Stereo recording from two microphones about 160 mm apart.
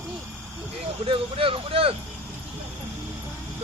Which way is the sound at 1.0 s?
35° right (ahead or behind).